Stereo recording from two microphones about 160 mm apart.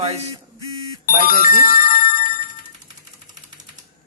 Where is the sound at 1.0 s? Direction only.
60° left (ahead or behind).